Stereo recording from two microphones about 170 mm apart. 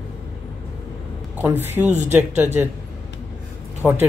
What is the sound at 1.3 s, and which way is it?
Speech, 10° right (ahead or behind).